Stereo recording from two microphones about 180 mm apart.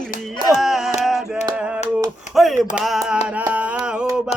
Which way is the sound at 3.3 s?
10° right (ahead or behind).